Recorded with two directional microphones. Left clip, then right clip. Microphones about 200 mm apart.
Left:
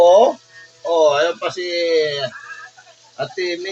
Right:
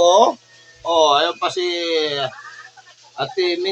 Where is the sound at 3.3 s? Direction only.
15° right (ahead or behind).